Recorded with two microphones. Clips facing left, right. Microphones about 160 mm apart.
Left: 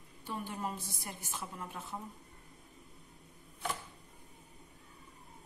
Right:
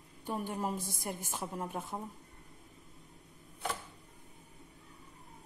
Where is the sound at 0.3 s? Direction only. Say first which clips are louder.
Right 4 dB; 45° right (ahead or behind).